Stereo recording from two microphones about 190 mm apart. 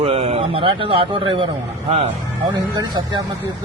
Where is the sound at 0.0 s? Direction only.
30° right (ahead or behind).